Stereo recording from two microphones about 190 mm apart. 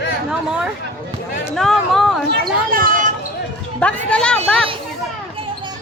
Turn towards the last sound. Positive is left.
turn(degrees=5)  # may be behind; listen again after turning